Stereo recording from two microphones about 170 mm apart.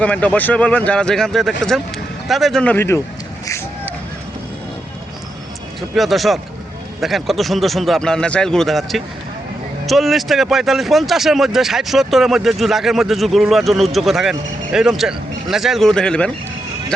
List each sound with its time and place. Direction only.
0.0 s speech: 10° left (ahead or behind)
3.4 s a sound: 15° left (ahead or behind)
5.9 s speech: centre (ahead or behind)